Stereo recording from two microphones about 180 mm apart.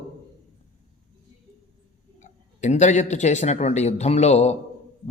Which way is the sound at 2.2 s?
40° left (ahead or behind).